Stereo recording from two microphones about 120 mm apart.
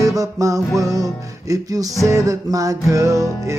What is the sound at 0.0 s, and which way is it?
Music, 25° right (ahead or behind).